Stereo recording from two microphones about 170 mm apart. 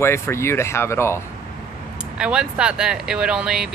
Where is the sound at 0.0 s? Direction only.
15° left (ahead or behind).